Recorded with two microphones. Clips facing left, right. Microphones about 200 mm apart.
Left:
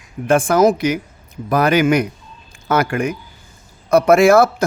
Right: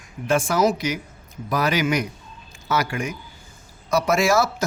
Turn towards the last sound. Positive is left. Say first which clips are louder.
# left 9 dB
turn(degrees=55)  # may be behind; listen again after turning